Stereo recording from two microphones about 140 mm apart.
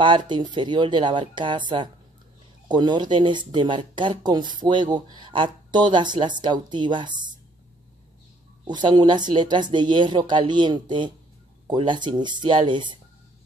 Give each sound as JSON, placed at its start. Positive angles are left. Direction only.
{"t": 0.0, "sound": "speech", "side_deg": -35}
{"t": 8.6, "sound": "speech", "side_deg": -30}